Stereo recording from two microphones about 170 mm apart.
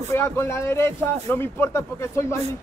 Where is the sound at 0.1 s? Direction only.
15° left (ahead or behind).